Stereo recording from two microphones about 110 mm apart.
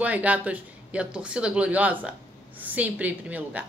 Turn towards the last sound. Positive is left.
turn(degrees=-15)  # may be behind; listen again after turning